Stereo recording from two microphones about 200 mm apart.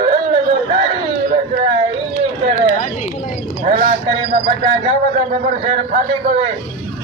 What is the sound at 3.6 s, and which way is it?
A man's voice, 40° right (ahead or behind).